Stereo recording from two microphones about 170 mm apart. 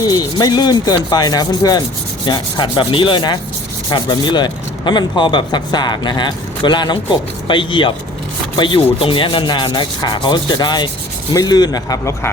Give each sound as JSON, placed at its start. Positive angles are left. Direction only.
{"t": 0.0, "sound": "speech", "side_deg": 25}